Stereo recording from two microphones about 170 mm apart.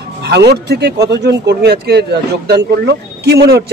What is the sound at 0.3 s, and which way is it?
Speech, 80° right.